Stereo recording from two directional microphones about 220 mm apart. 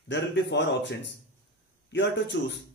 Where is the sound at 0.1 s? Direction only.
55° left (ahead or behind).